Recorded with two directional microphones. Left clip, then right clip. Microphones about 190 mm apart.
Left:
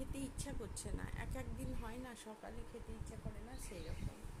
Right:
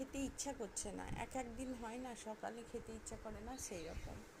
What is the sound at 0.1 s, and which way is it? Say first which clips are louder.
Speech: right 3 dB; 10° right (ahead or behind).